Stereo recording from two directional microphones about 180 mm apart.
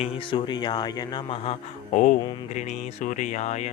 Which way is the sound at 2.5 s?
40° left (ahead or behind).